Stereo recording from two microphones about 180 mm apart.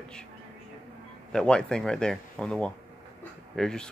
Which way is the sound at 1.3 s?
5° left (ahead or behind).